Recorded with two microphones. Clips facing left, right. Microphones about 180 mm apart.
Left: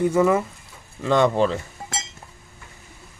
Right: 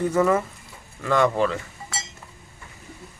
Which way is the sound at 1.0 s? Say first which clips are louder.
Left 2 dB; 25° left (ahead or behind).